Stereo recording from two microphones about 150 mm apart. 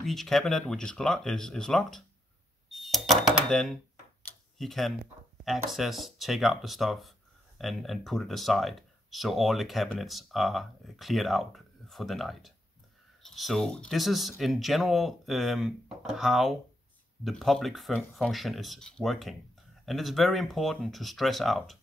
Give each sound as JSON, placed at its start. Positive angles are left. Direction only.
{"t": 0.0, "sound": "speech", "side_deg": 0}
{"t": 2.7, "sound": "a sound", "side_deg": 0}
{"t": 4.6, "sound": "speech", "side_deg": 0}